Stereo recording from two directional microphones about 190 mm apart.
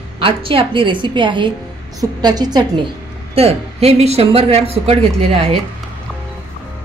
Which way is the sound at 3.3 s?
30° right (ahead or behind).